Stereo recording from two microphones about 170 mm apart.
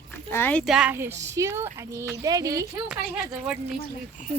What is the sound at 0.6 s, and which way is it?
Speech, 5° right (ahead or behind).